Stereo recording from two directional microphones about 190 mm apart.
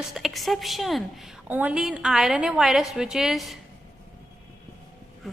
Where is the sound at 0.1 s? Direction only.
Centre (ahead or behind).